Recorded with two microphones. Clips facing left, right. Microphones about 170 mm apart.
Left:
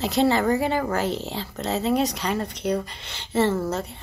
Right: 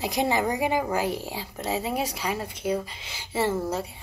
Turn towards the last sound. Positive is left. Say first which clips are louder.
# left 2 dB
turn(degrees=-10)  # may be behind; listen again after turning